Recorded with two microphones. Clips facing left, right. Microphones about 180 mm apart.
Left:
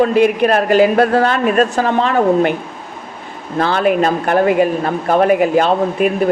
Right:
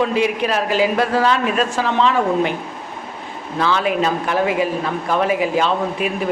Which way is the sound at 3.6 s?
55° left (ahead or behind).